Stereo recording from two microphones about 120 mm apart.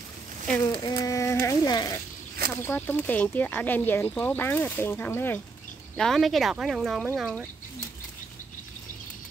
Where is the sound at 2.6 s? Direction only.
20° left (ahead or behind).